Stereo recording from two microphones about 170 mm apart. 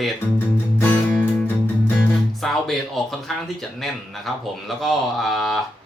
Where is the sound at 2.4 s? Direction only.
Centre (ahead or behind).